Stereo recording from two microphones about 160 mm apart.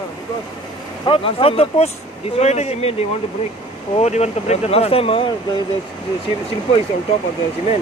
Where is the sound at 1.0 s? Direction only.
35° left (ahead or behind).